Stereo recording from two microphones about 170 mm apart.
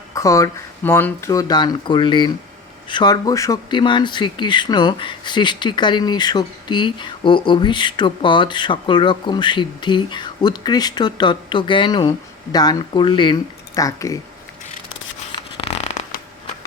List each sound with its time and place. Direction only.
0.1 s speech: 20° left (ahead or behind)
15.5 s zipper: 35° left (ahead or behind)